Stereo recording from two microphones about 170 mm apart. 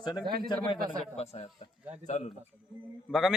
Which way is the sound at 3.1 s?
Centre (ahead or behind).